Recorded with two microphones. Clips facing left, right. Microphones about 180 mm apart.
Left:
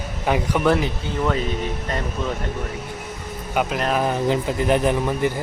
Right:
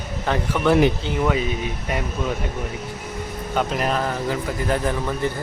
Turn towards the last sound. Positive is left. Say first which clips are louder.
# left 3 dB
turn(degrees=15)  # may be behind; listen again after turning